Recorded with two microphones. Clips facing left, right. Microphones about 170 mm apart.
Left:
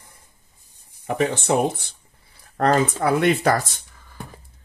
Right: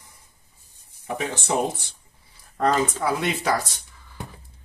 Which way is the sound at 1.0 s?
60° left (ahead or behind).